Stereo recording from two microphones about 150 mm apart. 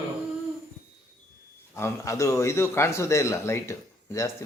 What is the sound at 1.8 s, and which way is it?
Speech, 20° left (ahead or behind).